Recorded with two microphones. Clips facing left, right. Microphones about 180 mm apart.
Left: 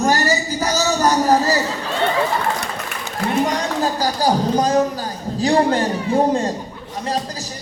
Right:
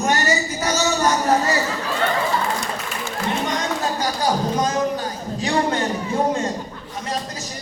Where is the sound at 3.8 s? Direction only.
35° left (ahead or behind).